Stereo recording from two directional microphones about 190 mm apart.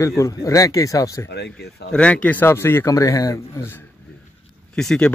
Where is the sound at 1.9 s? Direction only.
5° left (ahead or behind).